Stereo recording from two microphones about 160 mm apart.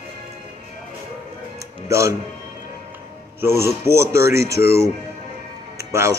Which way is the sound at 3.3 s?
15° right (ahead or behind).